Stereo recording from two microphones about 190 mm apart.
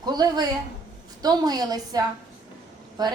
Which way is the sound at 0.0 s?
20° right (ahead or behind).